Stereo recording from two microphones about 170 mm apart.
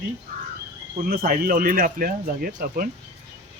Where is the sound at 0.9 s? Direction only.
55° right (ahead or behind).